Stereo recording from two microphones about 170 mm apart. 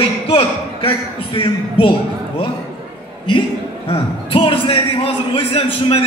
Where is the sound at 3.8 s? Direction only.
30° left (ahead or behind).